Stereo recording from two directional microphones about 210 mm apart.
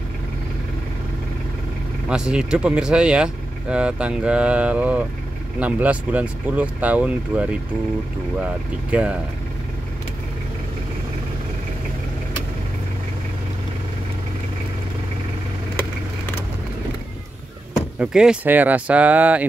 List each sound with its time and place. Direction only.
2.0 s speech: 5° right (ahead or behind)
17.7 s speech: 5° right (ahead or behind)